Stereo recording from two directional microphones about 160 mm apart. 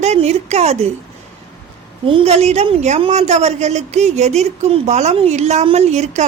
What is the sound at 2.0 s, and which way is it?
Speech, 35° right (ahead or behind).